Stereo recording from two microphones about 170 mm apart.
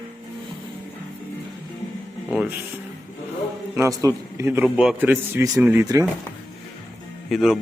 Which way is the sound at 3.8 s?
20° right (ahead or behind).